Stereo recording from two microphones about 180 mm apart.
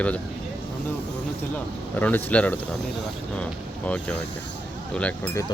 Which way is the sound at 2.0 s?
10° left (ahead or behind).